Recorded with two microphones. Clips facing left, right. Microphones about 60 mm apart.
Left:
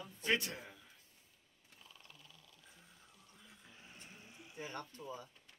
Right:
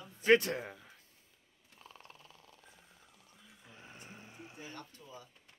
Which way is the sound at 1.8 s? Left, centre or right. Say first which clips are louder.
Right 6 dB; right.